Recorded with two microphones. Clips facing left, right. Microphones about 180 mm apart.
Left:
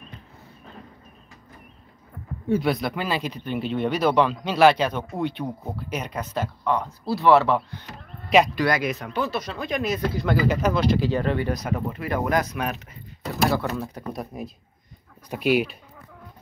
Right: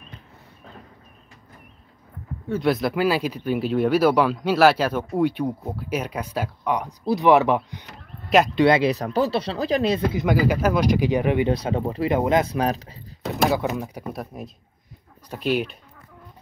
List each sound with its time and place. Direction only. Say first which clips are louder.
2.6 s speech: right 4 dB; centre (ahead or behind); by 10.0 s 30° right (ahead or behind)
10.1 s speech: right 2 dB; 10° right (ahead or behind)
11.5 s speech: right 4 dB; 30° right (ahead or behind)
13.3 s speech: right 2 dB; 15° right (ahead or behind)
14.2 s speech: left 1 dB; centre (ahead or behind)